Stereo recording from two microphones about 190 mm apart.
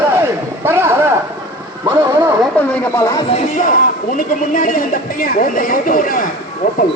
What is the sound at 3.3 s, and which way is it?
Speech, 45° left (ahead or behind).